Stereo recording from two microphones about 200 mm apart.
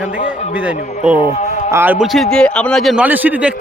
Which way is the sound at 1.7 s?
10° right (ahead or behind).